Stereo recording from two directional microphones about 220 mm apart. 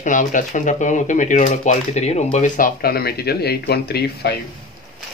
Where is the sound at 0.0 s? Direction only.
35° left (ahead or behind).